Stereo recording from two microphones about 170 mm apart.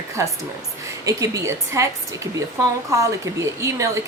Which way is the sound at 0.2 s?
20° right (ahead or behind).